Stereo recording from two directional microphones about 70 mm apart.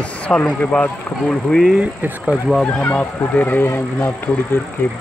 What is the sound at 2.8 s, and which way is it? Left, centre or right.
Speech, left.